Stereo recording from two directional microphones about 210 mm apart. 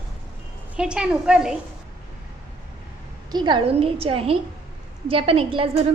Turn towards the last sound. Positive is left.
turn(degrees=-25)  # may be behind; listen again after turning